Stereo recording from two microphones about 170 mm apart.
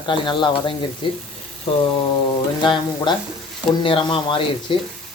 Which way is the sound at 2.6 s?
30° left (ahead or behind).